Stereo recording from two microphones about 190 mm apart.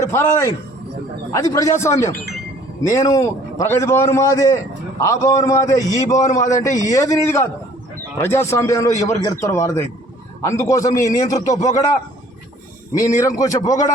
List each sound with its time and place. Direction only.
0.0 s a man's voice: 15° left (ahead or behind)
13.2 s a man's voice: 20° left (ahead or behind)